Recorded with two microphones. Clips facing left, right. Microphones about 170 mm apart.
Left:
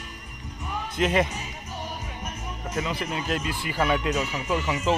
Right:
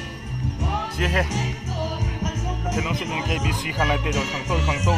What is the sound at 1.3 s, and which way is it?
Music, 90° right.